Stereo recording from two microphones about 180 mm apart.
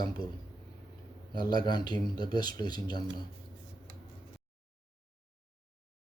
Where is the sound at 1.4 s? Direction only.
25° left (ahead or behind).